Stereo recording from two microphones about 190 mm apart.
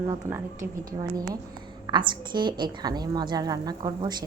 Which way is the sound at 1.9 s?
25° right (ahead or behind).